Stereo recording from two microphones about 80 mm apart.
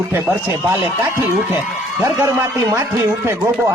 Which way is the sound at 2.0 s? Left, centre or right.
Right.